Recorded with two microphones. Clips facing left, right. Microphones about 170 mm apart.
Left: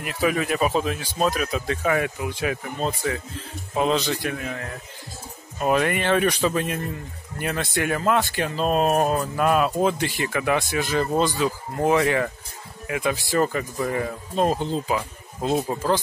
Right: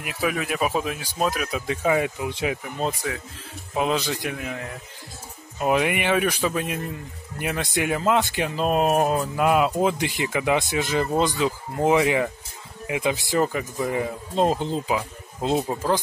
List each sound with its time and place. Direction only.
0.0 s speech: 5° right (ahead or behind)